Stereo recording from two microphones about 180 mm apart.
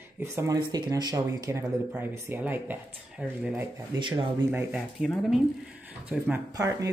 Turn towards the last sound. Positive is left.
turn(degrees=-20)  # may be behind; listen again after turning